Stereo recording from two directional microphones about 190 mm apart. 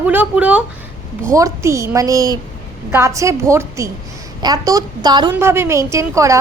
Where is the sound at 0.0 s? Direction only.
10° right (ahead or behind).